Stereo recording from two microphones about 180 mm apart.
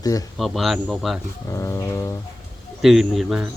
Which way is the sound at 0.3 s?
Centre (ahead or behind).